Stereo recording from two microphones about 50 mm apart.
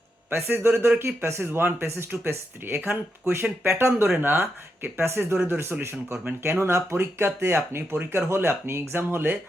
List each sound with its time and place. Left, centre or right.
0.8 s speech: right
5.8 s speech: right